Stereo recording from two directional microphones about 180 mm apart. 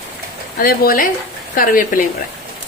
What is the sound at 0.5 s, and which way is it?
Speech, 55° left (ahead or behind).